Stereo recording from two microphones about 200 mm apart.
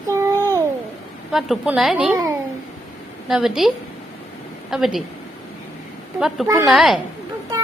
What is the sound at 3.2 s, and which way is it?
Speech, centre (ahead or behind).